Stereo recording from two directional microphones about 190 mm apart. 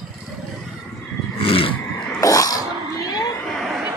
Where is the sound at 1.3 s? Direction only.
30° left (ahead or behind).